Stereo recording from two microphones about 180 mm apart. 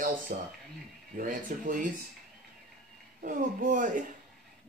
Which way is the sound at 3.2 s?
50° right (ahead or behind).